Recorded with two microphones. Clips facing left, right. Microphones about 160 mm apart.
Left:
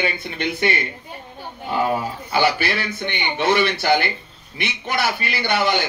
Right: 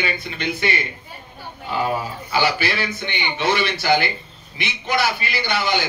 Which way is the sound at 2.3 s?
55° left (ahead or behind).